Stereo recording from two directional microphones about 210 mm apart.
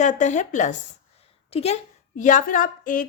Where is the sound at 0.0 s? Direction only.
35° left (ahead or behind).